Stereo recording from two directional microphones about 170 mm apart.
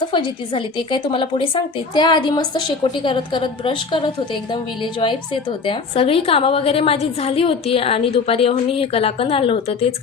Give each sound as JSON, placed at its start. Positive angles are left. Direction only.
{"t": 0.1, "sound": "a woman's voice", "side_deg": 30}